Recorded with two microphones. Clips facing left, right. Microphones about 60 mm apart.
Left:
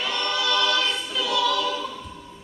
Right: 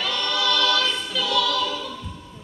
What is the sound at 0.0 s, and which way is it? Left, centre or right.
Choir, left.